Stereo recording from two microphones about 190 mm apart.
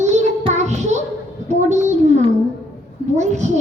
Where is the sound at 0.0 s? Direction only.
35° right (ahead or behind).